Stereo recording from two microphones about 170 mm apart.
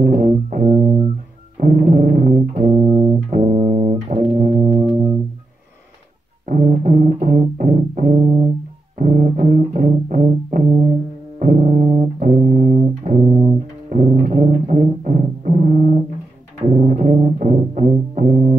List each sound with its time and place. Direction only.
0.0 s music: 50° right (ahead or behind)
6.4 s music: 50° right (ahead or behind)